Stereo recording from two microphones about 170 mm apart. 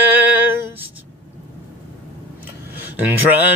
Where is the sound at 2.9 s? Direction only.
10° right (ahead or behind).